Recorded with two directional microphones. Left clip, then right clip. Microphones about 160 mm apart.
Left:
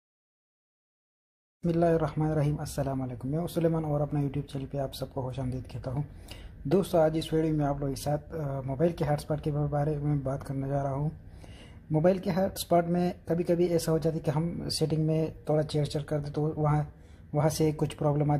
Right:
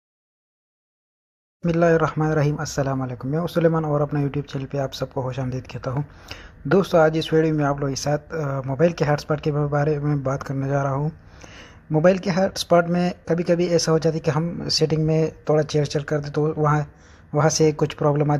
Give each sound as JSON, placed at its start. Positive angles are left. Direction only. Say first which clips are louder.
{"t": 1.7, "sound": "a man's voice", "louder": "right 8 dB", "side_deg": -15}